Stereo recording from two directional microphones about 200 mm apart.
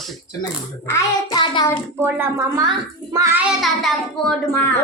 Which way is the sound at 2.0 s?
10° right (ahead or behind).